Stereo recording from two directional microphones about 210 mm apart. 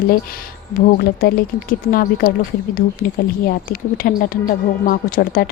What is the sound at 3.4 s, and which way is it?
Speech, 45° left (ahead or behind).